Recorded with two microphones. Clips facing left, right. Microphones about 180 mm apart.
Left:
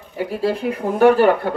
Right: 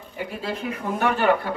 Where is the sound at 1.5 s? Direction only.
55° left (ahead or behind).